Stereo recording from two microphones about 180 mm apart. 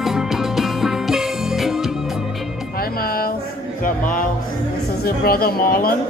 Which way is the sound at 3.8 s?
50° left (ahead or behind).